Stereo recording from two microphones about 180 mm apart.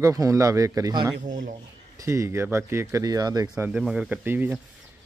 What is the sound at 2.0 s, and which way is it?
Speech, 15° right (ahead or behind).